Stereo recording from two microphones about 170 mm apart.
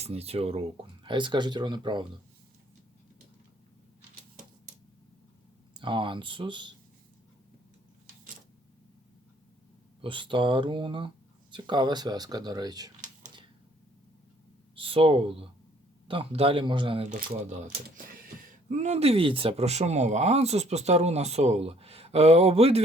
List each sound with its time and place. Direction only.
0.0 s speech: 35° right (ahead or behind)
5.8 s speech: 30° right (ahead or behind)
10.0 s speech: 30° right (ahead or behind)
14.8 s speech: 30° right (ahead or behind)
17.1 s speech: 45° right (ahead or behind)